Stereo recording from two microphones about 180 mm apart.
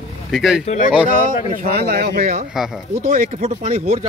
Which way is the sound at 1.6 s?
55° right (ahead or behind).